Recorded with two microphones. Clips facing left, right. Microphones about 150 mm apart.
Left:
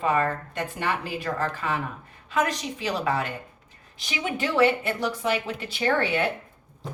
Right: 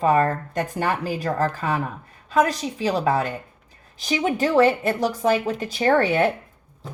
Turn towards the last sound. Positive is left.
turn(degrees=-45)  # may be behind; listen again after turning